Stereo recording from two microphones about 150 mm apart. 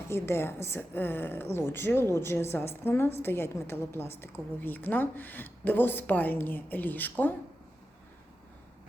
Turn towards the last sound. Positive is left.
turn(degrees=10)  # may be behind; listen again after turning